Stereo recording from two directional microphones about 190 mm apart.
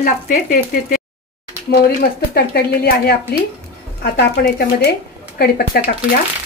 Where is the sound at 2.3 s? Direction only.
55° left (ahead or behind).